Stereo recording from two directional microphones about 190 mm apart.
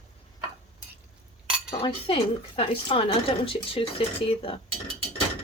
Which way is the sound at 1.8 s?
25° left (ahead or behind).